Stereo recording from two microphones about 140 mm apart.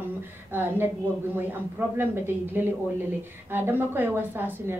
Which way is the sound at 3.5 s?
15° right (ahead or behind).